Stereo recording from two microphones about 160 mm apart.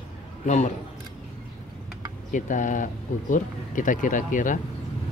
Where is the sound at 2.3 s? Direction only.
55° left (ahead or behind).